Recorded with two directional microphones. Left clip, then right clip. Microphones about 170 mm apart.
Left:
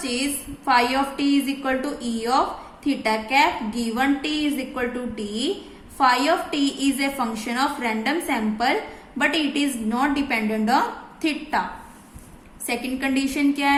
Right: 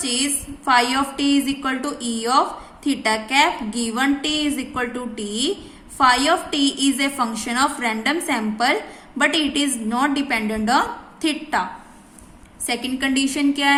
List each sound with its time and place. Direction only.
0.0 s a woman's voice: 20° right (ahead or behind)
12.6 s a woman's voice: 15° right (ahead or behind)